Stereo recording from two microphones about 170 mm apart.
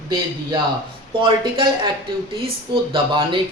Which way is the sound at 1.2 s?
30° right (ahead or behind).